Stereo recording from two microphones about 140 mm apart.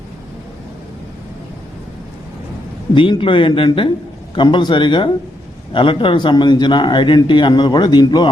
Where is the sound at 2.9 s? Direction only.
35° left (ahead or behind).